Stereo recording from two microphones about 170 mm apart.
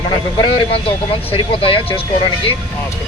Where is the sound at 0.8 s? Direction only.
30° left (ahead or behind).